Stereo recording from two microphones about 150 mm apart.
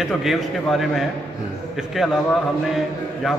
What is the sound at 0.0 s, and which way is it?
A man's voice, centre (ahead or behind).